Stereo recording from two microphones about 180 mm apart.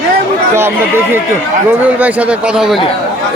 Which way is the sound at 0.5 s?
10° right (ahead or behind).